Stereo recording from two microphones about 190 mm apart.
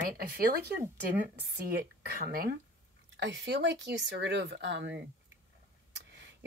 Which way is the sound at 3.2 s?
65° right (ahead or behind).